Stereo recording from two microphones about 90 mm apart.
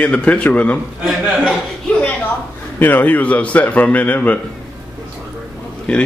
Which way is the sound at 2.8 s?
20° left (ahead or behind).